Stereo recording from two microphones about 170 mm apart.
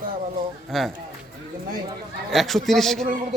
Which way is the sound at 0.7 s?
Centre (ahead or behind).